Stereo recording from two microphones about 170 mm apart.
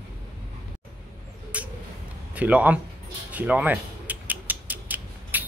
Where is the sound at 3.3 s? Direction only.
10° right (ahead or behind).